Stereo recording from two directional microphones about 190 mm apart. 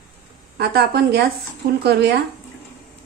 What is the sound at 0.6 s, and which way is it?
A woman's voice, 55° right (ahead or behind).